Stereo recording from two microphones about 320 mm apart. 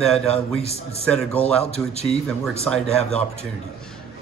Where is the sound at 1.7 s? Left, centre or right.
Centre.